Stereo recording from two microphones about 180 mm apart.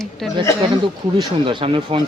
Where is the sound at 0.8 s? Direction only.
25° right (ahead or behind).